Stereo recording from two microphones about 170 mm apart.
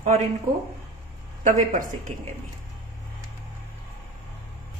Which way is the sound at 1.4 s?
50° right (ahead or behind).